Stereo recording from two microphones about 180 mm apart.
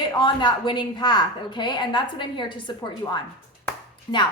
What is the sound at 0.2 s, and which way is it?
A woman's voice, 25° left (ahead or behind).